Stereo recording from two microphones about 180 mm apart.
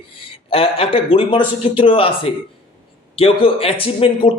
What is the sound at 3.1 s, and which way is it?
A man's voice, 30° left (ahead or behind).